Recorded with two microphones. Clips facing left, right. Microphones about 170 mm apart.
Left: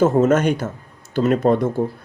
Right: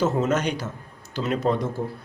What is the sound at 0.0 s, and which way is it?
Speech, 50° left (ahead or behind).